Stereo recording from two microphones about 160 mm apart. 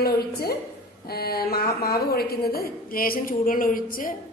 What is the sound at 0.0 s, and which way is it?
A woman's voice, 75° left (ahead or behind).